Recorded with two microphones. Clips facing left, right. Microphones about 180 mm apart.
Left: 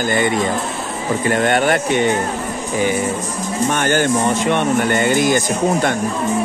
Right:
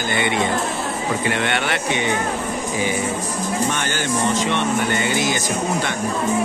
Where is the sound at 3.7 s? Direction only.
50° left (ahead or behind).